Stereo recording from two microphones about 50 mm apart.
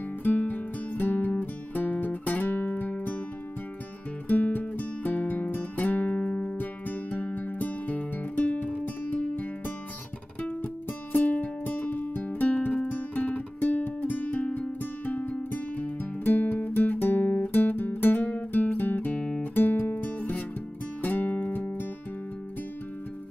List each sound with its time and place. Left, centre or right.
0.2 s music: left
4.3 s music: left
6.6 s music: left
10.6 s music: left